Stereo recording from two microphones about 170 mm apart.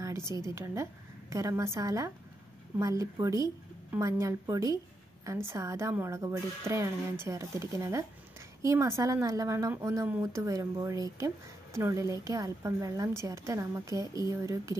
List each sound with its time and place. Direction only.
0.0 s a woman's voice: 15° right (ahead or behind)